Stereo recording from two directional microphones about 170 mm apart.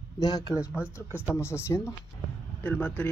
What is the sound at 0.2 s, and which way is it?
Speech, 20° left (ahead or behind).